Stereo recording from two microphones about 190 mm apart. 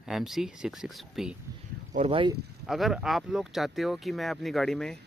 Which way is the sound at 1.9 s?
30° right (ahead or behind).